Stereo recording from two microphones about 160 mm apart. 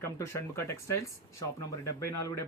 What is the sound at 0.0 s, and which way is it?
Speech, 15° left (ahead or behind).